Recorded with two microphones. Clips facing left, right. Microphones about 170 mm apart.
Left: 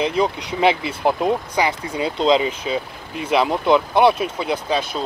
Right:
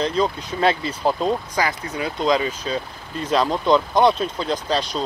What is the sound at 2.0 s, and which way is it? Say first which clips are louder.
Speech: left 3 dB; 25° left (ahead or behind).